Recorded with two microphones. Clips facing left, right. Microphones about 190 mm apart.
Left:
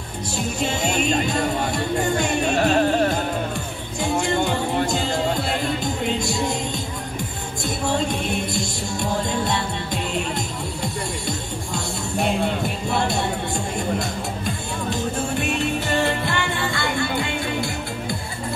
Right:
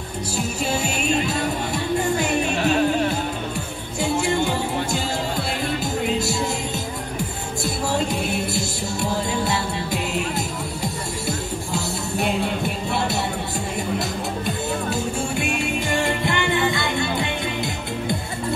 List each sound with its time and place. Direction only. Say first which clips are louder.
2.5 s music: left 3 dB; 45° left (ahead or behind)
7.6 s music: left 1 dB; 5° right (ahead or behind)
13.9 s music: right 1 dB; 5° right (ahead or behind); by 18.1 s 20° right (ahead or behind)